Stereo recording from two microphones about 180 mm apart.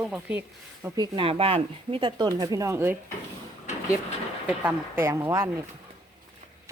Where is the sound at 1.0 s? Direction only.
30° right (ahead or behind); by 2.9 s 15° right (ahead or behind).